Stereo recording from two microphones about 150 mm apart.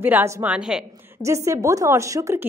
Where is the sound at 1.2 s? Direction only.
20° right (ahead or behind).